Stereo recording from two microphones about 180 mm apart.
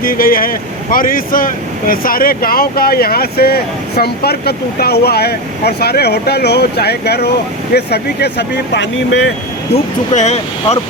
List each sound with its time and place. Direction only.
0.0 s speech: 55° left (ahead or behind); by 9.3 s 70° left (ahead or behind)
10.1 s speech: 35° left (ahead or behind)